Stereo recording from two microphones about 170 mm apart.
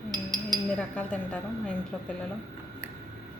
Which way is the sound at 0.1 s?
25° right (ahead or behind).